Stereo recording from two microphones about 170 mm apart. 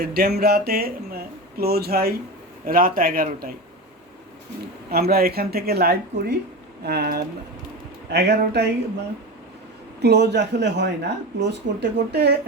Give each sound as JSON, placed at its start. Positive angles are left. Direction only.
{"t": 0.0, "sound": "speech", "side_deg": -65}
{"t": 4.9, "sound": "speech", "side_deg": -65}
{"t": 8.1, "sound": "speech", "side_deg": -75}
{"t": 10.0, "sound": "speech", "side_deg": -80}